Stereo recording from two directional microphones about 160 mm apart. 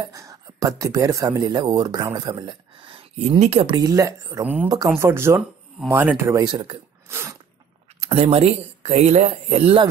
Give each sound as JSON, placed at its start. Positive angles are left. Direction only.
{"t": 0.0, "sound": "speech", "side_deg": -20}
{"t": 3.7, "sound": "speech", "side_deg": -20}
{"t": 7.1, "sound": "sneeze", "side_deg": -15}
{"t": 8.0, "sound": "speech", "side_deg": -40}